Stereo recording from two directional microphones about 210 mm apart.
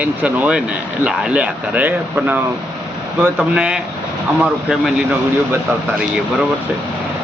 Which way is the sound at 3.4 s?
5° right (ahead or behind).